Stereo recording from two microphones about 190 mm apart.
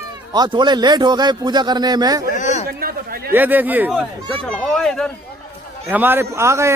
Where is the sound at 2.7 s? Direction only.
50° right (ahead or behind).